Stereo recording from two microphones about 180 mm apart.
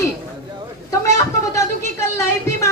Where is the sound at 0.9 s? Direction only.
20° left (ahead or behind).